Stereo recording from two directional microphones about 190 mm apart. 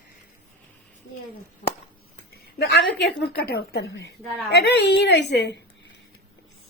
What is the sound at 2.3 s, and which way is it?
A woman's voice, 55° left (ahead or behind).